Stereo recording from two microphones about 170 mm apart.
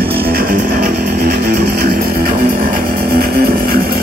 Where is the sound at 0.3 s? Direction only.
60° right (ahead or behind).